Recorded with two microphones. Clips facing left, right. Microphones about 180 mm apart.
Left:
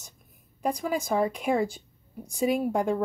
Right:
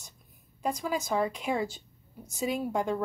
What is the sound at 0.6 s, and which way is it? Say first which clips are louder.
A woman's voice: left 3 dB; 50° left (ahead or behind).